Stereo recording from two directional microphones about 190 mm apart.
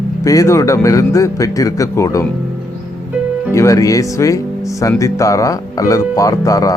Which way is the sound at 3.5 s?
15° left (ahead or behind).